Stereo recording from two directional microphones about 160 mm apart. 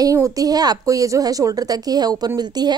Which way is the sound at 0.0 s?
20° right (ahead or behind).